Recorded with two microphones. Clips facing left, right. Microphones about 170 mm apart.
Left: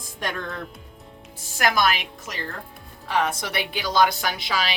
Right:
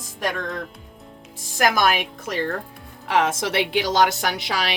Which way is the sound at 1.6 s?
45° right (ahead or behind).